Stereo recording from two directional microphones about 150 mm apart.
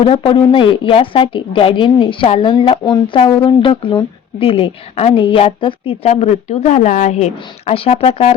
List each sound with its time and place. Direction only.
0.1 s a woman's voice: 35° left (ahead or behind)